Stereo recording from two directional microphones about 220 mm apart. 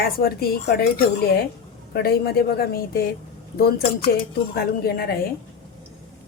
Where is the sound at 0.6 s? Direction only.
45° left (ahead or behind).